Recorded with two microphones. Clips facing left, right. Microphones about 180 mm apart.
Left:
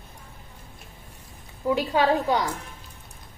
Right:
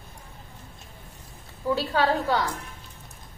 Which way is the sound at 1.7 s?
15° left (ahead or behind).